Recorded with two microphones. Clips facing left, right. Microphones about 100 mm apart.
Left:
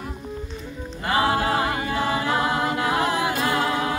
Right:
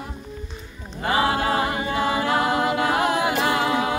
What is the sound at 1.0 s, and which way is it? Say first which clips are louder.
Music: right 1 dB; 20° right (ahead or behind).